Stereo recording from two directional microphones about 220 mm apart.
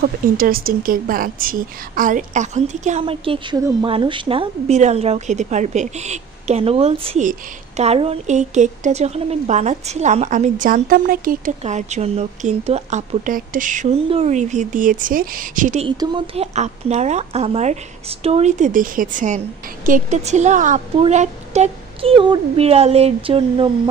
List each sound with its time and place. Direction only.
0.0 s a woman's voice: 40° right (ahead or behind)
16.0 s speech: 20° right (ahead or behind)